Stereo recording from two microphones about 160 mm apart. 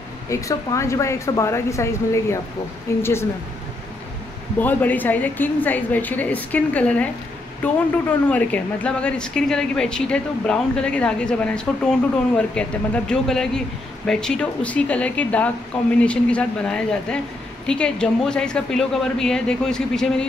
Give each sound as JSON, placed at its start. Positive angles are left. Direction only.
{"t": 0.3, "sound": "a woman's voice", "side_deg": 20}
{"t": 4.6, "sound": "a woman's voice", "side_deg": 10}
{"t": 8.3, "sound": "a woman's voice", "side_deg": 10}